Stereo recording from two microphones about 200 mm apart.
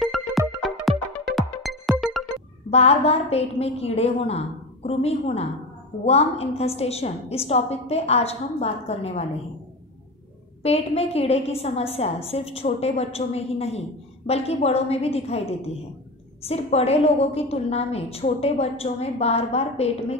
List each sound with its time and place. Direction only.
0.0 s music: centre (ahead or behind)
2.7 s a woman's voice: 30° left (ahead or behind)
10.6 s a woman's voice: 30° left (ahead or behind)
16.4 s a woman's voice: 30° left (ahead or behind)